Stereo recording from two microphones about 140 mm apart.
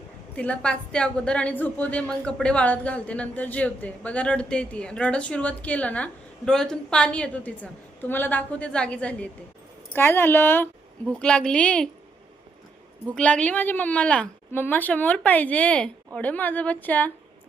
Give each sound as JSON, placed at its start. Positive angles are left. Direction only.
{"t": 0.3, "sound": "a woman's voice", "side_deg": 10}
{"t": 13.1, "sound": "a woman's voice", "side_deg": 10}